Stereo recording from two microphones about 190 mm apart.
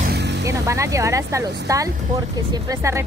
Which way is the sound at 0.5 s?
15° right (ahead or behind).